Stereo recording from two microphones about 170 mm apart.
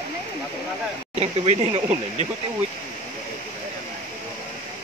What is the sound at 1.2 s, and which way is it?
Speech, 40° right (ahead or behind).